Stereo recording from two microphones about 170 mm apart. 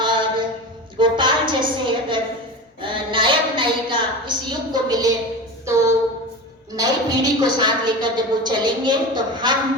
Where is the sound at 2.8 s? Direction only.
30° right (ahead or behind).